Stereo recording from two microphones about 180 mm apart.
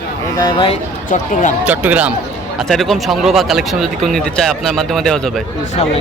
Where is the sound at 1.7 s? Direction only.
10° right (ahead or behind).